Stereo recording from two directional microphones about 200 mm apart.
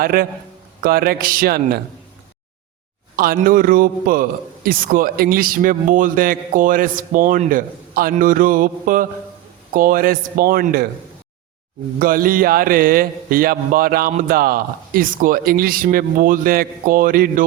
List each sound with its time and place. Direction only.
0.0 s a man's voice: 45° right (ahead or behind)
3.2 s a man's voice: 45° right (ahead or behind)
11.9 s a man's voice: 45° right (ahead or behind)